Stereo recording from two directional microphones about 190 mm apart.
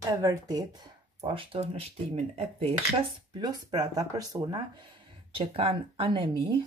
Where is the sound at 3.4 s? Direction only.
20° right (ahead or behind).